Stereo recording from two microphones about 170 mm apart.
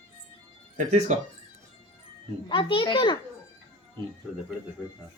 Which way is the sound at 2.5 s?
30° left (ahead or behind).